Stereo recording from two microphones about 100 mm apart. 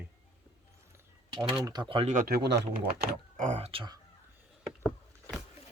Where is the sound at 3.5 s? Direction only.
90° right.